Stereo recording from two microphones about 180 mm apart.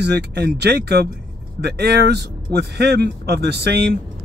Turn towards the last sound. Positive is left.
turn(degrees=-65)  # may be behind; listen again after turning